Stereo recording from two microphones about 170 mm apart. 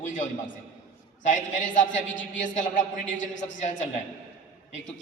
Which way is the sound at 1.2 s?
50° left (ahead or behind).